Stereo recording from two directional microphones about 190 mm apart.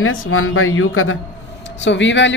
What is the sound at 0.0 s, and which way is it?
Speech, 90° left.